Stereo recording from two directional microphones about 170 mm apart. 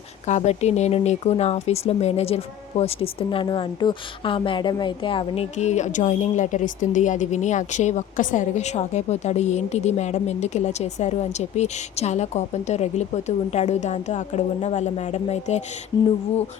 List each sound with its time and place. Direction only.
0.3 s speech: 40° left (ahead or behind)
15.9 s speech: 25° left (ahead or behind)